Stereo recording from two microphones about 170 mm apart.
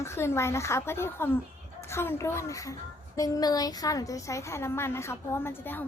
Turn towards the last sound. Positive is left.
turn(degrees=10)  # may be behind; listen again after turning